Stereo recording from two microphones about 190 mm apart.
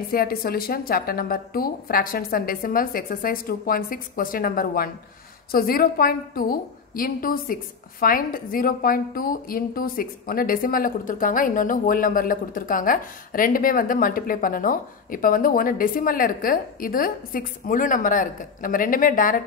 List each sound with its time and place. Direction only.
0.1 s a woman's voice: 50° left (ahead or behind)